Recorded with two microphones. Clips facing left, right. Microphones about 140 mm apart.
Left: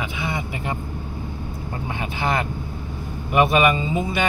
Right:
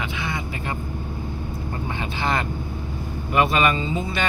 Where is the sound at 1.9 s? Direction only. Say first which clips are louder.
Left 2 dB; 10° left (ahead or behind).